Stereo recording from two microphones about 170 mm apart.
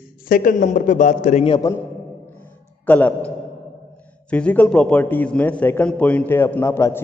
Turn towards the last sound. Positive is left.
turn(degrees=15)  # may be behind; listen again after turning